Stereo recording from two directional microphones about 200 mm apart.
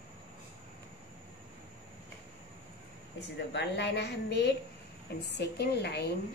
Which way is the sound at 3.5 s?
60° left (ahead or behind).